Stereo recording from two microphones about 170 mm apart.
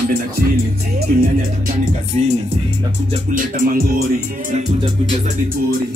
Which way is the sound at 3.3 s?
50° right (ahead or behind).